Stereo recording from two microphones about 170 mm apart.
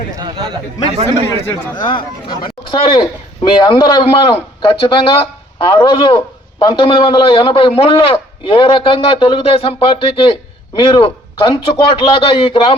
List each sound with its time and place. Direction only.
0.2 s a man's voice: 30° right (ahead or behind)
1.7 s a man's voice: 25° left (ahead or behind)